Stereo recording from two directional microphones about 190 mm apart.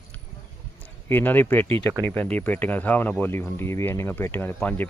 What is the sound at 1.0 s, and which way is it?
Speech, 10° left (ahead or behind).